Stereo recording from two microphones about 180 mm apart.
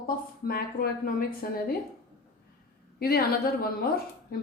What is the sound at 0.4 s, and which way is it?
A woman's voice, 55° left (ahead or behind).